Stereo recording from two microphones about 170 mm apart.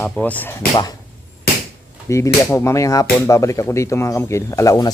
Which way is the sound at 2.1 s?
15° left (ahead or behind).